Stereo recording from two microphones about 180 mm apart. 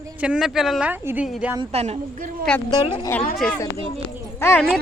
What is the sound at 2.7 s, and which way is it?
Speech, 25° left (ahead or behind).